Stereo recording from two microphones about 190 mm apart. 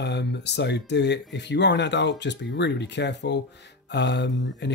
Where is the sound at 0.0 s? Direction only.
65° left (ahead or behind).